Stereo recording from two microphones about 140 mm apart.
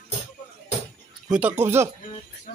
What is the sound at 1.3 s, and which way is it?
Speech, 10° right (ahead or behind).